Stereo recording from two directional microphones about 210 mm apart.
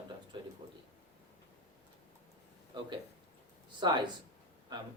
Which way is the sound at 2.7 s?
20° right (ahead or behind).